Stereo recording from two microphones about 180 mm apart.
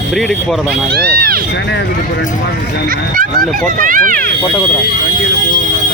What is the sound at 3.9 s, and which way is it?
Speech, 50° right (ahead or behind).